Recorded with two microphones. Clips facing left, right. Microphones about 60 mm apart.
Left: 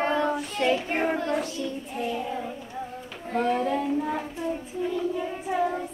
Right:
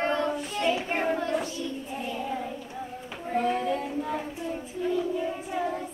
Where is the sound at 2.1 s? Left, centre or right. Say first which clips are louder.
Left 1 dB; centre.